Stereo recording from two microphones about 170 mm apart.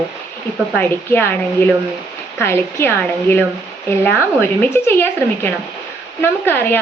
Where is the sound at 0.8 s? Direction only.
10° left (ahead or behind).